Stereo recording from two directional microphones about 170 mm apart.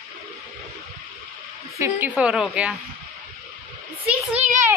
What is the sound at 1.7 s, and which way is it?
A child's voice, 15° right (ahead or behind).